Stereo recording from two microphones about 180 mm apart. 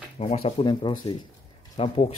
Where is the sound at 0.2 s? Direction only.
35° left (ahead or behind).